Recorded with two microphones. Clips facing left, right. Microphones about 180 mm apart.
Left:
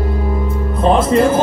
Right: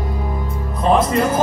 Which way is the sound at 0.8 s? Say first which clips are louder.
Left 3 dB; 25° left (ahead or behind).